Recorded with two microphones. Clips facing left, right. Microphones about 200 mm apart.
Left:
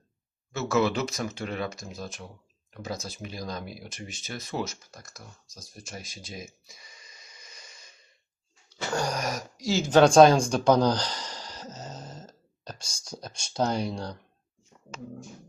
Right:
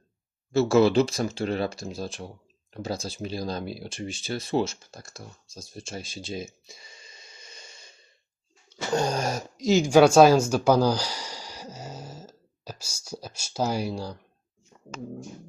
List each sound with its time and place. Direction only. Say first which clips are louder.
0.5 s speech: right 7 dB; 30° right (ahead or behind); by 14.2 s 5° right (ahead or behind)